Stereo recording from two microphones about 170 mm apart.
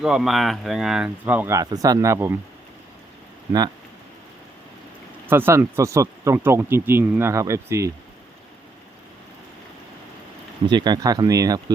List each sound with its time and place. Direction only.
0.0 s speech: 5° right (ahead or behind)
5.3 s speech: 15° right (ahead or behind)
10.7 s speech: 25° right (ahead or behind)